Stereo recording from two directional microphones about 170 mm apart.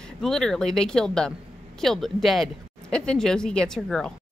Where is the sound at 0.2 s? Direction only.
5° left (ahead or behind).